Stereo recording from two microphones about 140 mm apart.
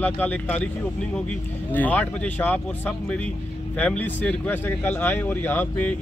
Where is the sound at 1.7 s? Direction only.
10° left (ahead or behind).